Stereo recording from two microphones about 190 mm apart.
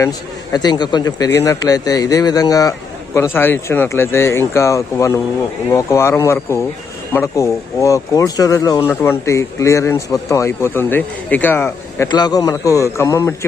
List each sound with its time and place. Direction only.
0.5 s a man's voice: 20° left (ahead or behind)